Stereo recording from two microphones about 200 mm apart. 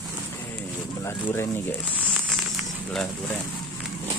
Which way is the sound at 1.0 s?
15° left (ahead or behind).